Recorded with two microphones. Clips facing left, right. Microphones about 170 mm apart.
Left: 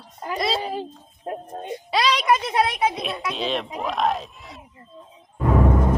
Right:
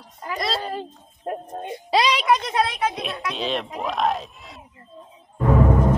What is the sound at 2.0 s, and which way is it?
Speech, 15° right (ahead or behind).